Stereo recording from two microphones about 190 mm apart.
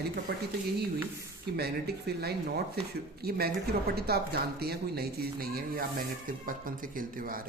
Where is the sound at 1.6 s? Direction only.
55° right (ahead or behind).